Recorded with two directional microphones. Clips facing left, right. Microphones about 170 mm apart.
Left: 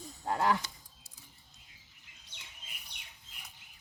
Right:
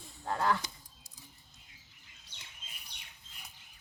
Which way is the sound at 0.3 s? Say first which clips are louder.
Left 1 dB; 15° left (ahead or behind).